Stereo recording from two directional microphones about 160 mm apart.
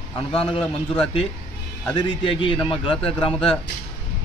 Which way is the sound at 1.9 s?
30° left (ahead or behind).